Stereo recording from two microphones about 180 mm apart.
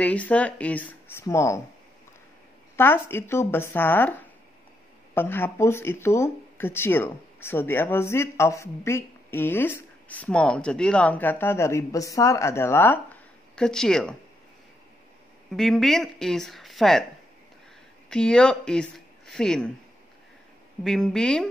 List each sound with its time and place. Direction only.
0.0 s speech: 5° left (ahead or behind)
2.7 s speech: 10° left (ahead or behind)
15.5 s speech: centre (ahead or behind)
18.1 s speech: 5° left (ahead or behind)
20.8 s speech: 5° left (ahead or behind)